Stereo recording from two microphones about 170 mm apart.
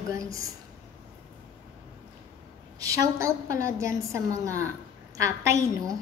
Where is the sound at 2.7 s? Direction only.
20° right (ahead or behind).